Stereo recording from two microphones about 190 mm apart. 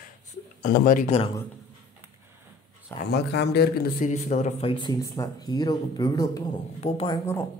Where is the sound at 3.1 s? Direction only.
60° left (ahead or behind).